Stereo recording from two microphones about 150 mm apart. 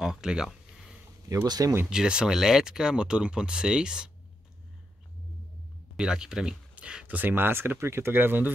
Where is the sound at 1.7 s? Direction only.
5° right (ahead or behind).